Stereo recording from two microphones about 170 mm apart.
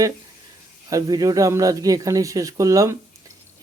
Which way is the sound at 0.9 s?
20° right (ahead or behind).